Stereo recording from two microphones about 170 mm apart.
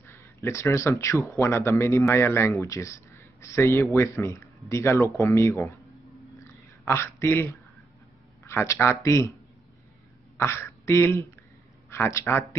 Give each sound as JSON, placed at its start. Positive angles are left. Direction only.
{"t": 0.0, "sound": "speech", "side_deg": 15}
{"t": 6.9, "sound": "speech", "side_deg": 15}
{"t": 10.3, "sound": "speech", "side_deg": 15}